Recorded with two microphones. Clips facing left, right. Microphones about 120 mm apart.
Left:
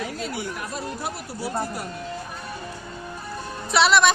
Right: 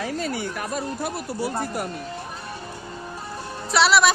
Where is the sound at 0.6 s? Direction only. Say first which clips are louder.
Right 3 dB; 55° right (ahead or behind).